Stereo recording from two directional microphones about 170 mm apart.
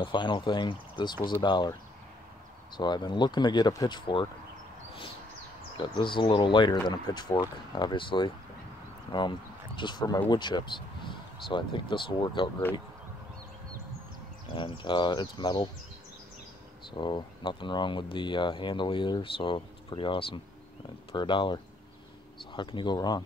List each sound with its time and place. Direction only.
0.0 s speech: 30° left (ahead or behind)
2.8 s speech: 25° left (ahead or behind)
5.8 s speech: 30° left (ahead or behind)
9.8 s speech: 25° left (ahead or behind)
14.5 s speech: 30° left (ahead or behind)
16.9 s speech: 30° left (ahead or behind)